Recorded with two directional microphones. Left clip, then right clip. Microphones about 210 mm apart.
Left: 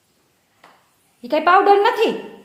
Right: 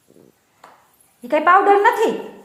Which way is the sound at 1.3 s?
15° left (ahead or behind).